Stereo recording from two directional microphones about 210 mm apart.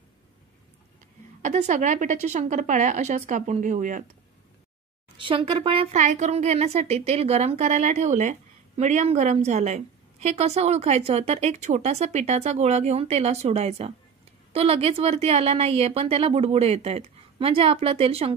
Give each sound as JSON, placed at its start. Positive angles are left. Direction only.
{"t": 1.4, "sound": "speech", "side_deg": -35}
{"t": 5.1, "sound": "a woman's voice", "side_deg": -25}